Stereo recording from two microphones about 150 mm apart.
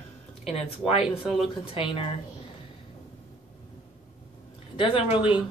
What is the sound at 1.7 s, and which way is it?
Speech, 35° left (ahead or behind).